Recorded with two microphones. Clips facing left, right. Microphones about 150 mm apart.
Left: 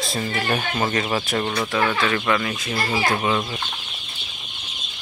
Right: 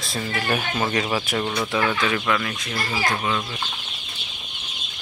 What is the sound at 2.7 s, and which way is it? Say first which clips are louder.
Speech: left 3 dB; 25° left (ahead or behind).